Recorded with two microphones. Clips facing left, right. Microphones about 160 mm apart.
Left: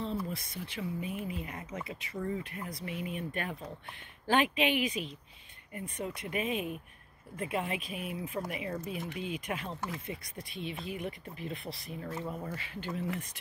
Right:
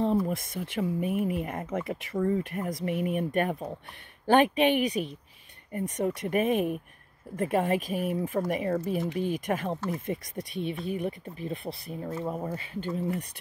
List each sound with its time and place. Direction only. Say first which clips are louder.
0.0 s speech: right 10 dB; 50° right (ahead or behind); by 13.0 s 35° right (ahead or behind)